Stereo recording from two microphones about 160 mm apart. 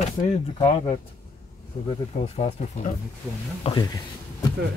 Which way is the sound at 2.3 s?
40° left (ahead or behind).